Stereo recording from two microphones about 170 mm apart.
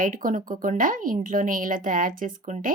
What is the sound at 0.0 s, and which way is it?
A woman's voice, 55° right (ahead or behind).